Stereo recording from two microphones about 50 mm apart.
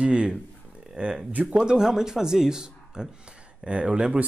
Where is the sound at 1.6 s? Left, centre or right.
Centre.